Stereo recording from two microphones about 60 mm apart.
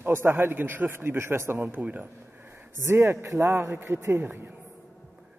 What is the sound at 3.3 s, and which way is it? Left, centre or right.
Speech, right.